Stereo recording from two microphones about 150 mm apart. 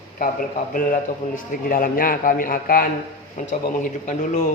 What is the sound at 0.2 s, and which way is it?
A man's voice, 65° left (ahead or behind).